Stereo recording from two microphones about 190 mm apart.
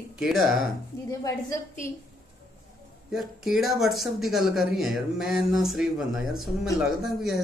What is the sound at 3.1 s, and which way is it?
Speech, centre (ahead or behind).